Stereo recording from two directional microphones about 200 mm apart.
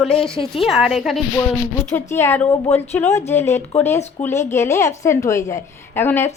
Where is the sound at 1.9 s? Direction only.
10° left (ahead or behind).